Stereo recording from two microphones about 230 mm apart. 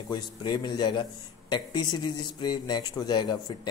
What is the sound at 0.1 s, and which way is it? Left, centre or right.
Speech, centre.